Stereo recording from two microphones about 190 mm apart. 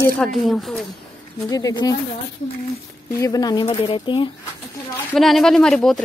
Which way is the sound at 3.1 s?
20° left (ahead or behind).